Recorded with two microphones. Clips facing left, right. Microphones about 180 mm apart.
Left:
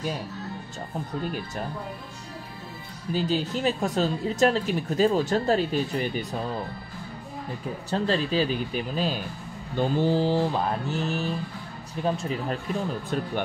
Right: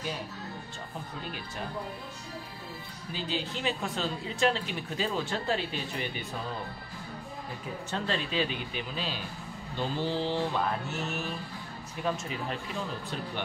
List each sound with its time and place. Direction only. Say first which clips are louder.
3.1 s speech: left 9 dB; 45° left (ahead or behind)
7.9 s speech: left 7 dB; 35° left (ahead or behind)
13.1 s speech: left 11 dB; 50° left (ahead or behind)